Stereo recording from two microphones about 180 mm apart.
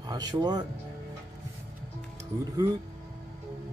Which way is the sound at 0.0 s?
20° right (ahead or behind).